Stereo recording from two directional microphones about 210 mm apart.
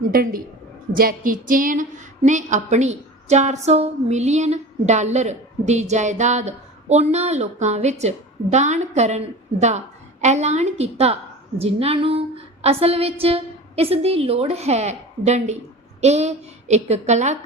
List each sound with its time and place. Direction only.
0.1 s a woman's voice: 45° right (ahead or behind)